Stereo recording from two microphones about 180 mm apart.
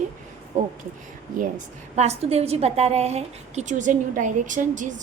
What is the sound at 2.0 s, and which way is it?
A woman's voice, 35° right (ahead or behind).